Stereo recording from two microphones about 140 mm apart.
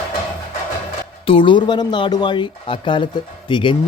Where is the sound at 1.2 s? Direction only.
40° left (ahead or behind).